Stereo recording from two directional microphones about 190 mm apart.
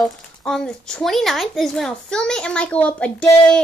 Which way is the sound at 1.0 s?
Centre (ahead or behind).